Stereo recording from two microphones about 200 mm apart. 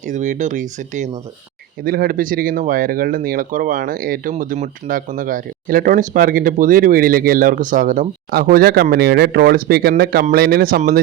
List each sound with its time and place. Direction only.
0.0 s speech: 35° right (ahead or behind)
1.8 s speech: 50° right (ahead or behind)